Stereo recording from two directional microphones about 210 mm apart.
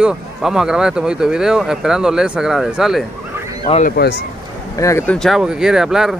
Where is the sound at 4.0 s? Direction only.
50° left (ahead or behind).